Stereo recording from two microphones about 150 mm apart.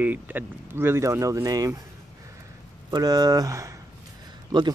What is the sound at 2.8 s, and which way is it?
Speech, 25° right (ahead or behind).